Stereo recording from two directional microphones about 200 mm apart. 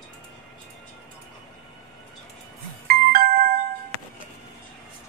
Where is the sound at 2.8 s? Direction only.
45° right (ahead or behind).